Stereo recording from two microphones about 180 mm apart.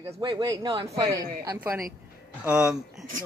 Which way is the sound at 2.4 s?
5° right (ahead or behind).